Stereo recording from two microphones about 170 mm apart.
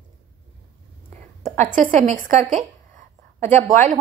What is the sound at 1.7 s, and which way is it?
A woman's voice, 45° right (ahead or behind).